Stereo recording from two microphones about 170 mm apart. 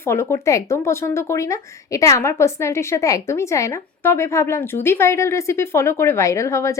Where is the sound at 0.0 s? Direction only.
15° left (ahead or behind).